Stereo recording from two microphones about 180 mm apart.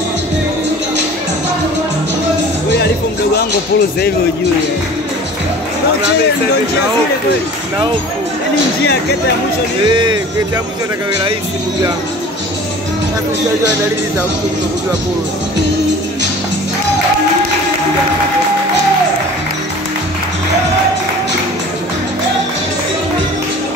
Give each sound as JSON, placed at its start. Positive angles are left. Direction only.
{"t": 9.8, "sound": "speech", "side_deg": -25}